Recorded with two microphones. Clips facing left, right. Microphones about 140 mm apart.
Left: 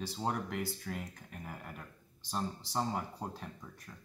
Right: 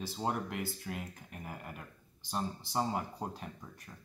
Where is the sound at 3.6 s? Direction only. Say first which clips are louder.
Even; 15° right (ahead or behind).